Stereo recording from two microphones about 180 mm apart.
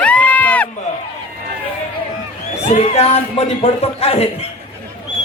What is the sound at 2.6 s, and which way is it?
A man's voice, 40° left (ahead or behind).